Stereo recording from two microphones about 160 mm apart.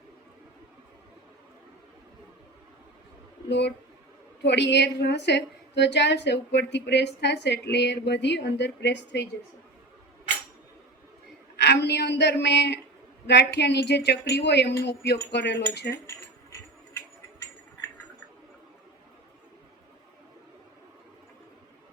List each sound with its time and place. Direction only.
4.4 s a woman's voice: 90° left
11.6 s a woman's voice: 90° left